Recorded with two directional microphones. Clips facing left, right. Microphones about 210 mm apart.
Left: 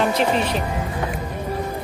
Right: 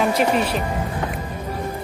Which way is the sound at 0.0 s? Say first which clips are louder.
Right 1 dB; 10° right (ahead or behind).